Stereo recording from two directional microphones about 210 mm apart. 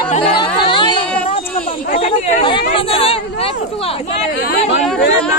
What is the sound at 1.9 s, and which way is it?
Speech, 35° left (ahead or behind).